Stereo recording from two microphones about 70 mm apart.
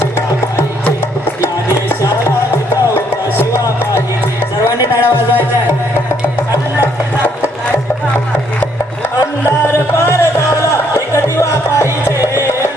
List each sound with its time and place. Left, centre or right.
2.0 s music: left
3.5 s music: left
4.9 s music: right
9.2 s music: left